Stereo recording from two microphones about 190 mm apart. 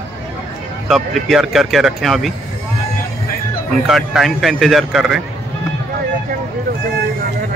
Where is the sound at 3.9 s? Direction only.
Centre (ahead or behind).